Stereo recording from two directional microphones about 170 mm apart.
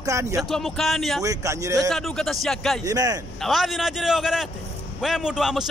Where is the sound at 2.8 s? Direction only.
20° right (ahead or behind).